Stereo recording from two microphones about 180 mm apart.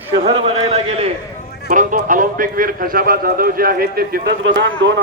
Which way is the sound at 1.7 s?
45° right (ahead or behind).